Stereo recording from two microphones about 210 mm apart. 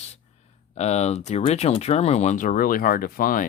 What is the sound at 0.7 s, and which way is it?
Speech, 30° left (ahead or behind).